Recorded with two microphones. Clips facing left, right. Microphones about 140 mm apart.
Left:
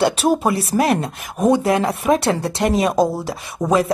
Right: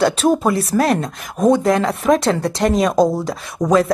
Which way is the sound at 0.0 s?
10° left (ahead or behind).